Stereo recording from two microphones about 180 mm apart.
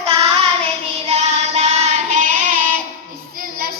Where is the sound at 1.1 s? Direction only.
40° right (ahead or behind).